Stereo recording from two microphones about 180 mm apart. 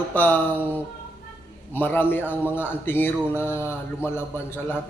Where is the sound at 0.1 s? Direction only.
10° left (ahead or behind).